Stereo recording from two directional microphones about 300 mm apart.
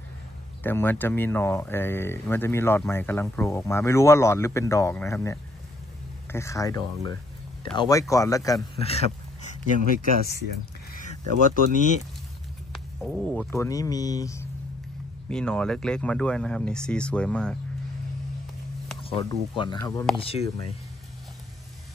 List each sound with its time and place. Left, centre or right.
0.7 s speech: centre; by 9.6 s left
11.1 s speech: left
12.7 s speech: centre
19.0 s speech: centre